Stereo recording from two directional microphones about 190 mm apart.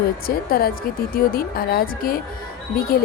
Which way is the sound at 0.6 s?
55° left (ahead or behind).